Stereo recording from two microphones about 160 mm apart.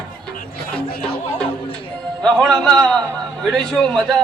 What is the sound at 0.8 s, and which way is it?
Chatter, 75° left (ahead or behind).